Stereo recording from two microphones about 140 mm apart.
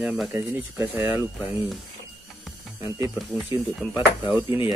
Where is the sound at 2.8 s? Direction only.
20° right (ahead or behind).